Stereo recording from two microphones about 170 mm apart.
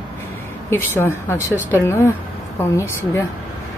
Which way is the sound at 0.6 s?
15° left (ahead or behind).